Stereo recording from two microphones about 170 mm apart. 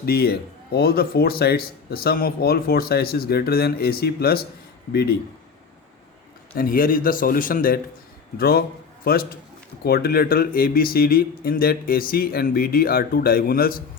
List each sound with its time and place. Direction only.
0.0 s speech: 65° left (ahead or behind)
6.6 s speech: 55° left (ahead or behind)